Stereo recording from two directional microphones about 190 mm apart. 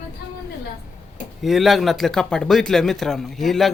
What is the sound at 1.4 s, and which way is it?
Speech, centre (ahead or behind).